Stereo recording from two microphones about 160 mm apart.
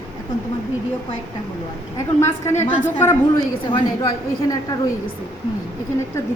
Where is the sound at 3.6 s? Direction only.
30° left (ahead or behind).